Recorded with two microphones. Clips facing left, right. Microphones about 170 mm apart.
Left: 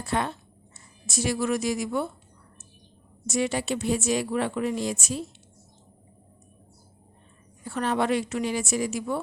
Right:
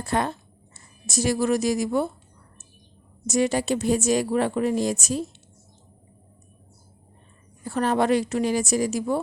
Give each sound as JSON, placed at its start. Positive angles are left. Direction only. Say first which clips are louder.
{"t": 0.0, "sound": "a woman's voice", "louder": "right 3 dB", "side_deg": -40}
{"t": 3.2, "sound": "a woman's voice", "louder": "right 4 dB", "side_deg": -40}
{"t": 7.6, "sound": "a woman's voice", "louder": "right 4 dB", "side_deg": -40}